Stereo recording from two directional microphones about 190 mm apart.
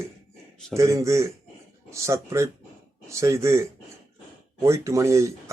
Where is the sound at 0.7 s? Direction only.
15° right (ahead or behind).